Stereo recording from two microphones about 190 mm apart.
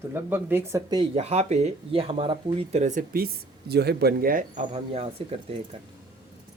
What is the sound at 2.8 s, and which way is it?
Speech, 45° right (ahead or behind).